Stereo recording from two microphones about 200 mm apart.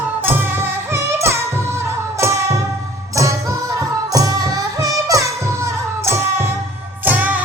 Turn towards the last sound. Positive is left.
turn(degrees=-10)  # may be behind; listen again after turning